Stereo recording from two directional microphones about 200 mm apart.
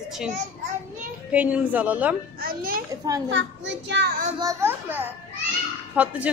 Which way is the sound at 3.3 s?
65° right (ahead or behind).